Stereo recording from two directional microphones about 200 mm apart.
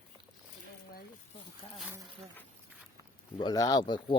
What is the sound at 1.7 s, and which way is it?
Speech, 5° right (ahead or behind).